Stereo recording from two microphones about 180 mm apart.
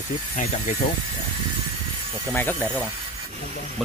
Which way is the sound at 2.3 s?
10° left (ahead or behind).